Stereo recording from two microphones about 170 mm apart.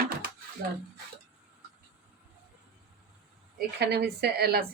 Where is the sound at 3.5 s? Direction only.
75° right (ahead or behind).